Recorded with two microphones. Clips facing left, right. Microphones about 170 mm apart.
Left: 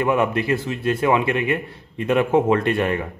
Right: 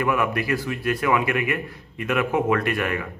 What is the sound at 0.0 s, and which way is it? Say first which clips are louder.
Speech: left 3 dB; 25° left (ahead or behind).